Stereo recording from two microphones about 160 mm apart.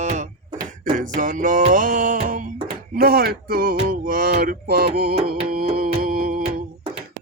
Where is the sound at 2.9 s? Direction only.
65° right (ahead or behind).